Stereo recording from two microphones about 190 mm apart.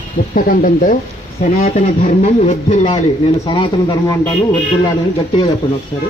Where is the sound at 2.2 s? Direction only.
35° left (ahead or behind).